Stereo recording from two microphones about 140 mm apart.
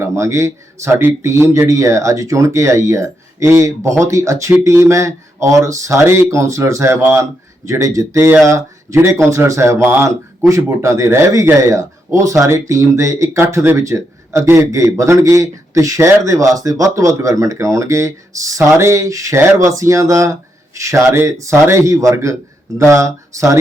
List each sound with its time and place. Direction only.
0.0 s speech: 20° right (ahead or behind)